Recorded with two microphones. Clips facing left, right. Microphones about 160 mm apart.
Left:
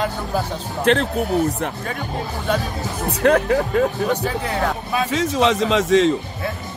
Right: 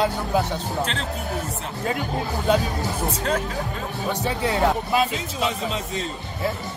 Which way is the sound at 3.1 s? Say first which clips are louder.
Left 13 dB; 65° left (ahead or behind).